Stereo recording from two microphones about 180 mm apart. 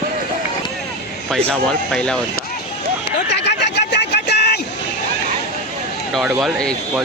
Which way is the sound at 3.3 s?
70° left (ahead or behind).